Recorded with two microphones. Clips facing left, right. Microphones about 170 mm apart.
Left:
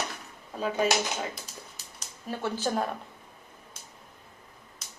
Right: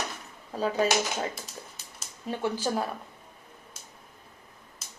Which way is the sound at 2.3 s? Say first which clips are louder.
Right 1 dB; 15° right (ahead or behind).